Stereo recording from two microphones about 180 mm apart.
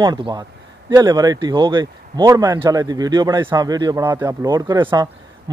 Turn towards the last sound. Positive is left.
turn(degrees=-20)  # may be behind; listen again after turning